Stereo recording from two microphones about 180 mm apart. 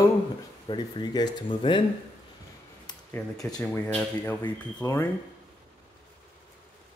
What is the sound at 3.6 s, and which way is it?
Speech, 10° left (ahead or behind).